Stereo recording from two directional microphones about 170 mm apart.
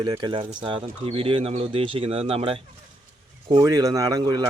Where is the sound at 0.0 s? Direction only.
25° right (ahead or behind).